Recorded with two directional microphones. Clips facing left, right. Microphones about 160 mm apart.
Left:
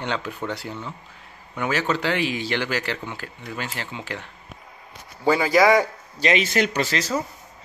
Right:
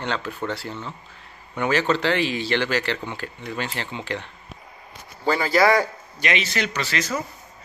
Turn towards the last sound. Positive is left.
turn(degrees=40)  # may be behind; listen again after turning